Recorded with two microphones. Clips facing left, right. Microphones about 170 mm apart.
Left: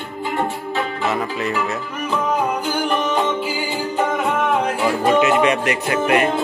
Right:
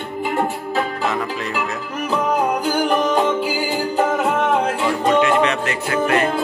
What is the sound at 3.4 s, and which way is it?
Music, 40° right (ahead or behind).